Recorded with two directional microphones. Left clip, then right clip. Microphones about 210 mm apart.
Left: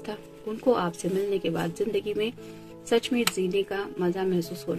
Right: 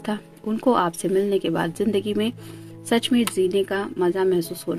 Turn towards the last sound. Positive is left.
turn(degrees=-50)  # may be behind; listen again after turning